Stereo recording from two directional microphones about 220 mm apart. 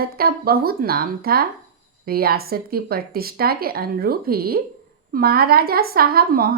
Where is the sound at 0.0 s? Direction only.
45° right (ahead or behind).